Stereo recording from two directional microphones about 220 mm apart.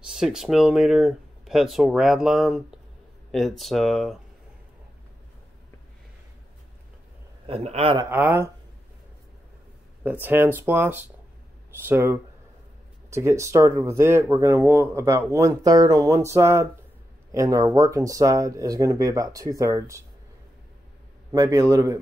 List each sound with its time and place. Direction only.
0.1 s speech: centre (ahead or behind)
7.4 s a man's voice: 30° right (ahead or behind)
8.1 s speech: 10° right (ahead or behind)
10.2 s speech: 10° right (ahead or behind)
21.3 s speech: 15° right (ahead or behind)